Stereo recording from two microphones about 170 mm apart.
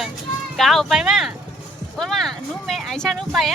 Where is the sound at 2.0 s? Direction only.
Centre (ahead or behind).